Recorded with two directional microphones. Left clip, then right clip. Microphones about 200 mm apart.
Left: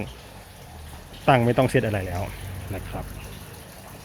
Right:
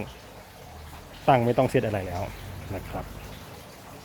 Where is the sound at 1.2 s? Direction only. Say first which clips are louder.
Left 2 dB; centre (ahead or behind).